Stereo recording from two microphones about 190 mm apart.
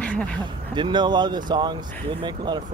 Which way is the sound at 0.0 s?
5° left (ahead or behind).